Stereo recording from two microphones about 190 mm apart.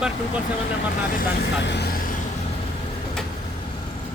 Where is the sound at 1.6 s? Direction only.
60° left (ahead or behind).